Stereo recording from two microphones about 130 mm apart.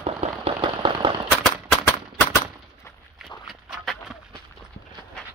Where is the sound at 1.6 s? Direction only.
15° left (ahead or behind).